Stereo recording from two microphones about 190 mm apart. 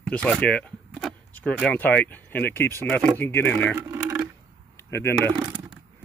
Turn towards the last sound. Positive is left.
turn(degrees=15)  # may be behind; listen again after turning